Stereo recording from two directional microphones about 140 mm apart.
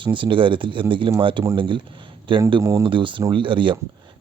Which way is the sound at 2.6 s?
20° right (ahead or behind).